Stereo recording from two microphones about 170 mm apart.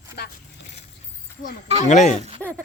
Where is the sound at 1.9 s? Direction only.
45° left (ahead or behind).